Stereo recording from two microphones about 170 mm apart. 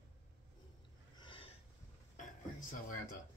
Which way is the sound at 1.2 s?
30° left (ahead or behind).